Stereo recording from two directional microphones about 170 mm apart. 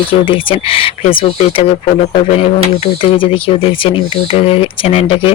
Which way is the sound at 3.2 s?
30° left (ahead or behind).